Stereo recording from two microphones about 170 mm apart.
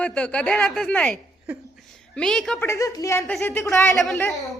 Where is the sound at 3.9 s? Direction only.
Centre (ahead or behind).